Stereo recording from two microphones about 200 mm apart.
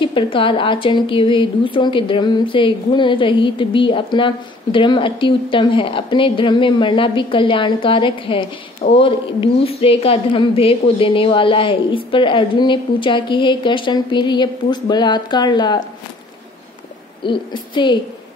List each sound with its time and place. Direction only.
0.0 s a woman's voice: 25° left (ahead or behind)
17.2 s speech: 25° left (ahead or behind)